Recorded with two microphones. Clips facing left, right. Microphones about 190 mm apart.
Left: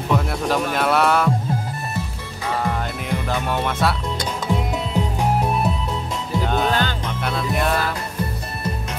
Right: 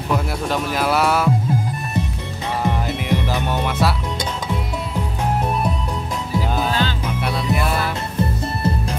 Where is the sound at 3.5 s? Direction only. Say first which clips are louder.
Even; centre (ahead or behind).